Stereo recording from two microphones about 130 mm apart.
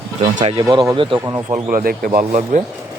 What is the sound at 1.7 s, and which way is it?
Speech, 90° right.